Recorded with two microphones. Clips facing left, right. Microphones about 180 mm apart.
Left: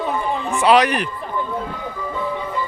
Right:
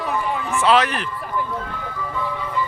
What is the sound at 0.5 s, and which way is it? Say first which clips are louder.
Speech: left 3 dB; 15° left (ahead or behind).